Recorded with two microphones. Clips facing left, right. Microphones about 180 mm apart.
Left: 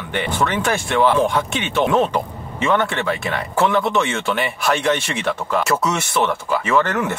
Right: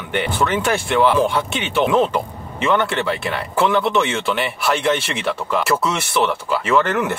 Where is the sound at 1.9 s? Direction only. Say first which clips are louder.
Right 1 dB; 20° left (ahead or behind).